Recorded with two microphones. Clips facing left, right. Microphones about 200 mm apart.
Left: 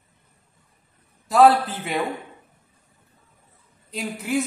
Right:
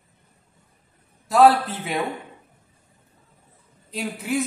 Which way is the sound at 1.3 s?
Centre (ahead or behind).